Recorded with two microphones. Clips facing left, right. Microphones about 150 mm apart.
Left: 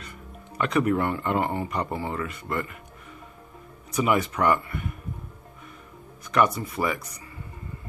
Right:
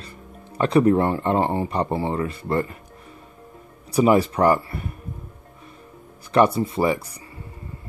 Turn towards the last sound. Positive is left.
turn(degrees=-30)  # may be behind; listen again after turning